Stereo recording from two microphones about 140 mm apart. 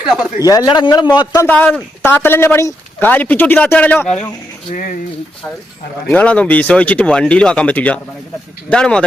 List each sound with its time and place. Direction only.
0.4 s a man's voice: 25° left (ahead or behind)
1.4 s speech: 15° left (ahead or behind)
4.7 s speech: 65° left (ahead or behind)
6.1 s speech: 10° left (ahead or behind)